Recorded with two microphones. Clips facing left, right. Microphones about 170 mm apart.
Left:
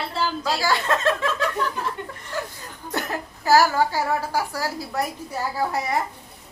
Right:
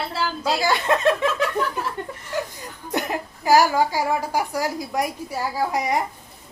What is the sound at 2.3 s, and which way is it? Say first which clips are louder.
Chuckle: right 3 dB; 15° right (ahead or behind).